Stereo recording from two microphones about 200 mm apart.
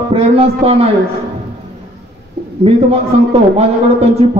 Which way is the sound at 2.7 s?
30° right (ahead or behind).